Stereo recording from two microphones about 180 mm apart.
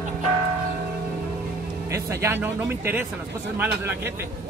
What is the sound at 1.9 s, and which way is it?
Speech, 15° right (ahead or behind).